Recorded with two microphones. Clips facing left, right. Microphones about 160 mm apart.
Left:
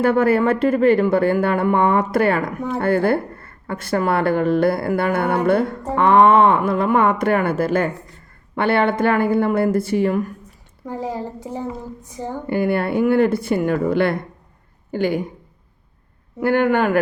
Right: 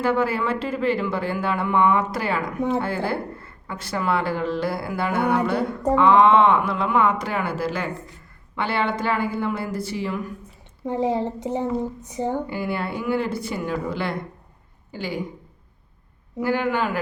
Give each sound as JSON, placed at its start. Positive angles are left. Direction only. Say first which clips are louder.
{"t": 0.0, "sound": "speech", "louder": "left 6 dB", "side_deg": 55}
{"t": 10.8, "sound": "a child's voice", "louder": "right 4 dB", "side_deg": -25}
{"t": 12.5, "sound": "speech", "louder": "left 8 dB", "side_deg": 55}
{"t": 16.4, "sound": "speech", "louder": "left 6 dB", "side_deg": 55}